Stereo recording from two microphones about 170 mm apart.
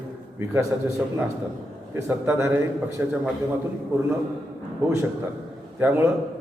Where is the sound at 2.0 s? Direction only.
15° right (ahead or behind).